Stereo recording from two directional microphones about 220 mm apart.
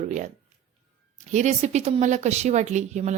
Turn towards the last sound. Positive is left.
turn(degrees=-30)  # may be behind; listen again after turning